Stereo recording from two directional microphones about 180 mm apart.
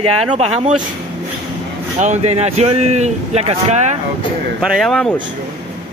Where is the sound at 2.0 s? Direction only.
40° right (ahead or behind).